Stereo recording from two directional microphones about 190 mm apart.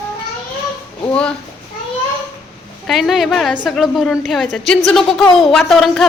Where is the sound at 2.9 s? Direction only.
Centre (ahead or behind).